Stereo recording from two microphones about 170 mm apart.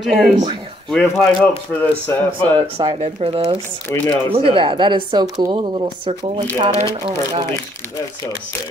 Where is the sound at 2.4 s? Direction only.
30° right (ahead or behind).